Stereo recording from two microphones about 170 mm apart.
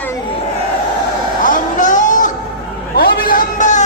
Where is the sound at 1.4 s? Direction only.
50° left (ahead or behind).